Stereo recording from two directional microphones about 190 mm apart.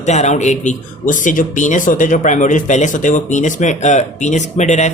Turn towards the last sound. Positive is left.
turn(degrees=40)  # may be behind; listen again after turning